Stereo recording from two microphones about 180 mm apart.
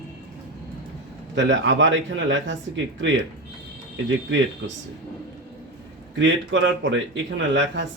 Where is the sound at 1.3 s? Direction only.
90° right.